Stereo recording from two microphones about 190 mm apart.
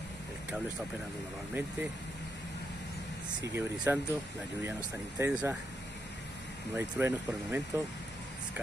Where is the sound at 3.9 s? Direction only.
15° right (ahead or behind).